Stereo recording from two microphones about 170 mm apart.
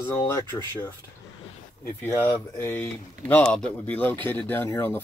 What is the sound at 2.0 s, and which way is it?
Speech, 15° left (ahead or behind).